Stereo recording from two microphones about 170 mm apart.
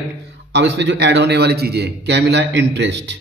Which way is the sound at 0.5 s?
90° right.